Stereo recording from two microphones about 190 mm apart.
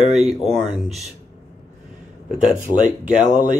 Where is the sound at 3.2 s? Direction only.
40° right (ahead or behind).